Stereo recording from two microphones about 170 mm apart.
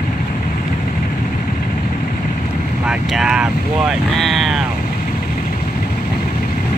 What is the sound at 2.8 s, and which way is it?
Speech, 5° right (ahead or behind).